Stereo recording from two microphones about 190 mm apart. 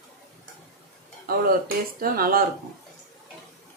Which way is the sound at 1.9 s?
50° right (ahead or behind).